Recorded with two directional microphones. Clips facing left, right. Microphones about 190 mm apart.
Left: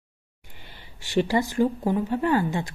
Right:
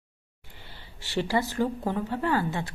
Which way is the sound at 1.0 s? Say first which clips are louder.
Left 4 dB; 15° left (ahead or behind).